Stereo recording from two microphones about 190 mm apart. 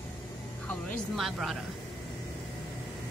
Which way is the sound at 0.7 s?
5° left (ahead or behind).